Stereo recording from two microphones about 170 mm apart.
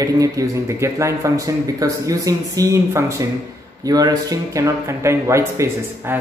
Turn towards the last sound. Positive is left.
turn(degrees=-15)  # may be behind; listen again after turning